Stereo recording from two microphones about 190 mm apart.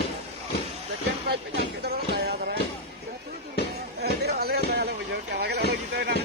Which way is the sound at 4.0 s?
60° right (ahead or behind).